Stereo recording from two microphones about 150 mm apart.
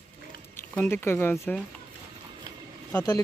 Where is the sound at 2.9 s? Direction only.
25° left (ahead or behind).